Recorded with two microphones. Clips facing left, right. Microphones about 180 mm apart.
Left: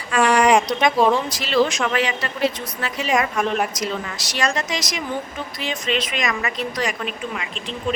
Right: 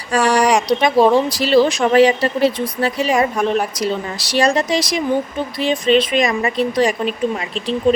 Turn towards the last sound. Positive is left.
turn(degrees=-35)  # may be behind; listen again after turning